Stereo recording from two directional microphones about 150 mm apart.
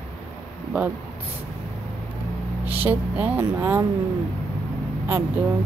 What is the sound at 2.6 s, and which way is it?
Speech, 10° right (ahead or behind).